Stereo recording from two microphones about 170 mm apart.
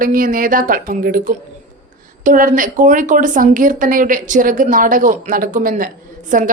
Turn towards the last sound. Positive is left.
turn(degrees=-50)  # may be behind; listen again after turning